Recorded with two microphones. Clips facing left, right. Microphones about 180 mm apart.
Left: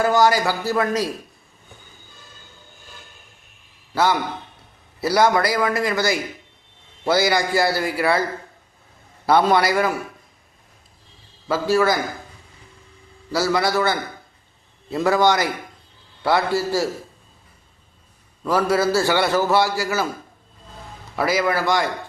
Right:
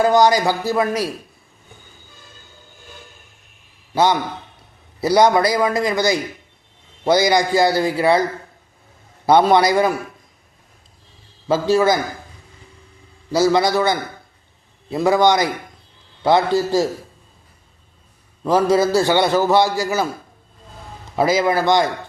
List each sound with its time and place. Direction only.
0.0 s a man's voice: 20° right (ahead or behind)
3.9 s a man's voice: 20° right (ahead or behind)
9.2 s a man's voice: 20° right (ahead or behind)
11.7 s a man's voice: 20° right (ahead or behind)
13.3 s a man's voice: 20° right (ahead or behind)
18.4 s a man's voice: 20° right (ahead or behind)
21.2 s a man's voice: 20° right (ahead or behind)